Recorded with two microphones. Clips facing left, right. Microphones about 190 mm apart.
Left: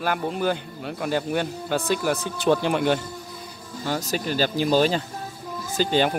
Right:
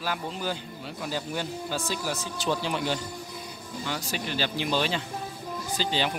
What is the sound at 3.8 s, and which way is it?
Speech, 45° left (ahead or behind).